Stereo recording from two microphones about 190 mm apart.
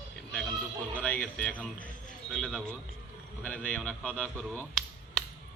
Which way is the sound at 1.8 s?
45° left (ahead or behind).